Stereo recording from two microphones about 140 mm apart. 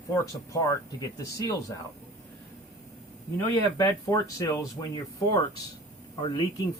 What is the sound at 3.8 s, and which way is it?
Speech, 25° left (ahead or behind).